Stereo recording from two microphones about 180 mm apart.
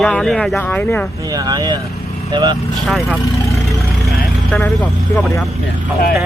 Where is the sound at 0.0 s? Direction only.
5° left (ahead or behind).